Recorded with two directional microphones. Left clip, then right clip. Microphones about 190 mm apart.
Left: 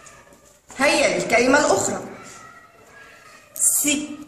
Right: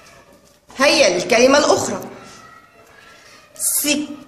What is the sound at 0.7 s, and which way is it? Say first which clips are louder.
A woman's voice: right 4 dB; 50° right (ahead or behind).